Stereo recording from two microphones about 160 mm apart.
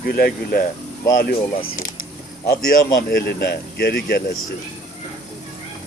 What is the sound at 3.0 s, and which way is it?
Speech, 70° left (ahead or behind).